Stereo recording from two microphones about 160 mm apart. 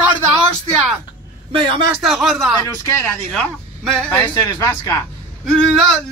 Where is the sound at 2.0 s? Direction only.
Centre (ahead or behind).